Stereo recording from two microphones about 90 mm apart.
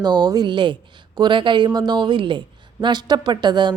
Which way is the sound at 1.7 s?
50° right (ahead or behind).